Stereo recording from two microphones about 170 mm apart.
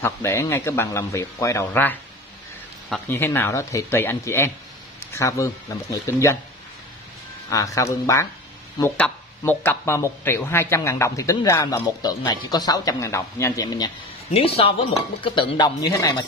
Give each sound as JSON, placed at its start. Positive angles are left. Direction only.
{"t": 0.0, "sound": "speech", "side_deg": 15}
{"t": 3.1, "sound": "speech", "side_deg": 15}
{"t": 7.4, "sound": "speech", "side_deg": 20}